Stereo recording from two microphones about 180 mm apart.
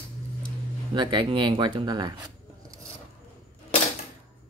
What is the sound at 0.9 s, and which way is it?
Speech, 25° right (ahead or behind).